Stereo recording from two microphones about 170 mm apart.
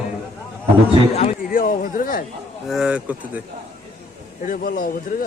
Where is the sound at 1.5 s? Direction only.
55° left (ahead or behind).